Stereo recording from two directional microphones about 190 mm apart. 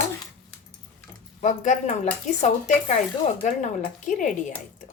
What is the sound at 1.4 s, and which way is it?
Speech, 40° left (ahead or behind).